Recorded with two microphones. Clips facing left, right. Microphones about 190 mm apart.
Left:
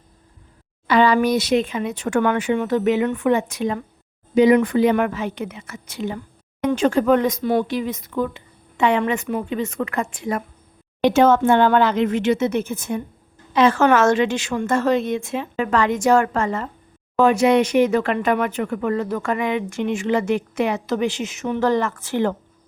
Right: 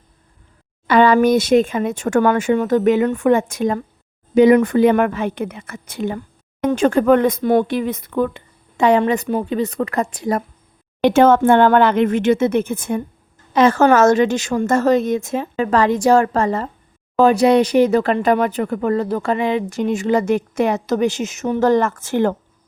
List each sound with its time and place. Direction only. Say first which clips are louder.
0.9 s a woman's voice: right 4 dB; 50° right (ahead or behind)
8.8 s speech: right 4 dB; 40° right (ahead or behind)
11.0 s speech: right 3 dB; 55° right (ahead or behind)
13.5 s speech: right 3 dB; 45° right (ahead or behind)